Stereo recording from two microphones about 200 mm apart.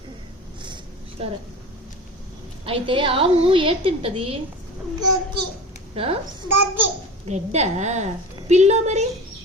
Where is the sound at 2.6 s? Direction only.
25° right (ahead or behind).